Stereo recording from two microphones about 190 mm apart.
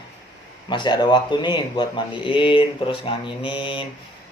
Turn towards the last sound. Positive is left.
turn(degrees=25)  # may be behind; listen again after turning